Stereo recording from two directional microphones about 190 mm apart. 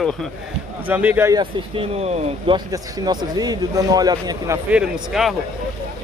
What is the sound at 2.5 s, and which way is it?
A man's voice, 20° right (ahead or behind).